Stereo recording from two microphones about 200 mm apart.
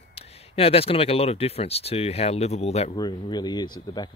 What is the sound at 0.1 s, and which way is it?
Speech, 30° left (ahead or behind).